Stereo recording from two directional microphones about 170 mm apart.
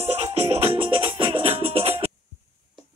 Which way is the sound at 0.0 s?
40° right (ahead or behind).